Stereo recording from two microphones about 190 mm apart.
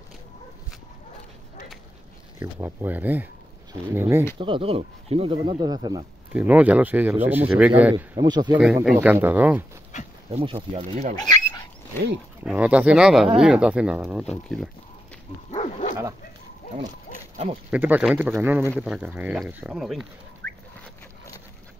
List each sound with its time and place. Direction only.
2.3 s speech: 10° right (ahead or behind)
4.4 s speech: 25° right (ahead or behind)
6.3 s speech: 5° right (ahead or behind)
8.5 s speech: 5° right (ahead or behind)
10.3 s speech: 30° right (ahead or behind)
11.2 s dog: 20° left (ahead or behind)
12.4 s speech: 5° right (ahead or behind)
15.5 s dog: 35° left (ahead or behind)
16.6 s dog: 50° left (ahead or behind)
17.6 s speech: 10° right (ahead or behind)